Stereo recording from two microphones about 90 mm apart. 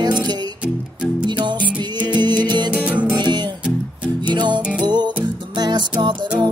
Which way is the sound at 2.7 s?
15° right (ahead or behind).